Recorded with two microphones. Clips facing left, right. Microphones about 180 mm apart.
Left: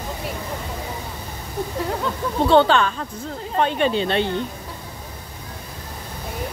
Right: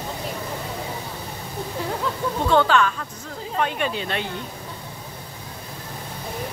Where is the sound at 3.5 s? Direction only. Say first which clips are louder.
Left 5 dB; 30° left (ahead or behind).